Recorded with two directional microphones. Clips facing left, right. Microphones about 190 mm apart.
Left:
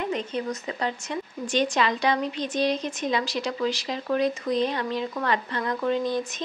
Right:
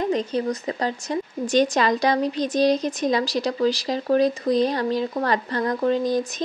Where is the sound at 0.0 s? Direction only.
35° right (ahead or behind).